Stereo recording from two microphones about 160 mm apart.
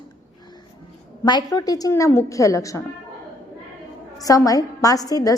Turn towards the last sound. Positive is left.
turn(degrees=20)  # may be behind; listen again after turning